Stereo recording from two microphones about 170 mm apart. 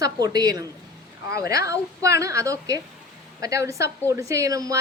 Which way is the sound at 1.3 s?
65° left (ahead or behind).